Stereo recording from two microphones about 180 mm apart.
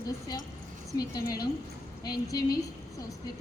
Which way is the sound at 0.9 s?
20° left (ahead or behind).